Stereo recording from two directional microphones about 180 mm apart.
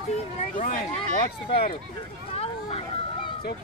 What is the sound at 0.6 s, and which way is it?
Speech, 50° left (ahead or behind).